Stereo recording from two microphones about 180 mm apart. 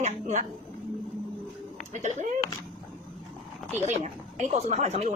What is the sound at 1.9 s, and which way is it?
Speech, 40° right (ahead or behind).